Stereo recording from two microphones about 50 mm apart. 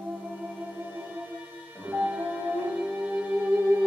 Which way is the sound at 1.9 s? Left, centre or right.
Right.